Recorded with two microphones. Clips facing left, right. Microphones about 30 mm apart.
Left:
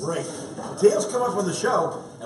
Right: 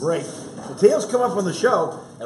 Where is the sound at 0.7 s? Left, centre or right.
Centre.